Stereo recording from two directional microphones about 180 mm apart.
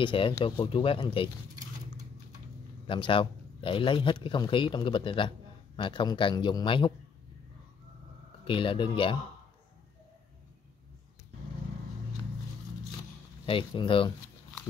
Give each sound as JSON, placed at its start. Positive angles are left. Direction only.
{"t": 0.0, "sound": "speech", "side_deg": 30}
{"t": 2.9, "sound": "speech", "side_deg": 30}
{"t": 8.5, "sound": "speech", "side_deg": 30}
{"t": 13.5, "sound": "speech", "side_deg": 30}